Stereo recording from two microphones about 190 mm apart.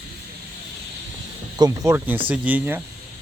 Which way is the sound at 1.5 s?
20° right (ahead or behind).